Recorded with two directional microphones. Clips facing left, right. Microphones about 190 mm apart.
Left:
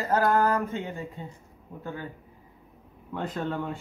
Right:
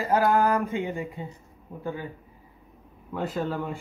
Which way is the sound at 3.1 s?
5° right (ahead or behind).